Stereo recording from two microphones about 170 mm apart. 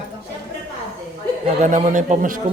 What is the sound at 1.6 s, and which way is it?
Speech, 45° right (ahead or behind).